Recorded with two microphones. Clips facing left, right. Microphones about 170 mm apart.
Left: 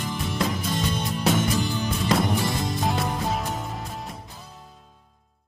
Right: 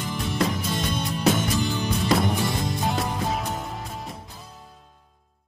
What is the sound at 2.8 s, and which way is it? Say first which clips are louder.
Music: left 1 dB; centre (ahead or behind).